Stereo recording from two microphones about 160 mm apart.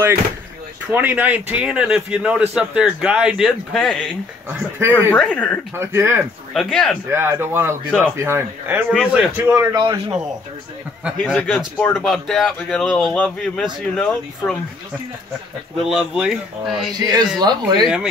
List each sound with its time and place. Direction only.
0.8 s a man's voice: 10° right (ahead or behind)
4.5 s a man's voice: 10° right (ahead or behind)
5.1 s speech: 10° left (ahead or behind)
5.8 s a man's voice: 15° right (ahead or behind)
6.5 s speech: centre (ahead or behind)
7.1 s a man's voice: 15° right (ahead or behind)
9.8 s a man's voice: 30° right (ahead or behind)
11.2 s speech: 5° left (ahead or behind)
15.9 s speech: 5° right (ahead or behind)
16.9 s speech: 25° right (ahead or behind)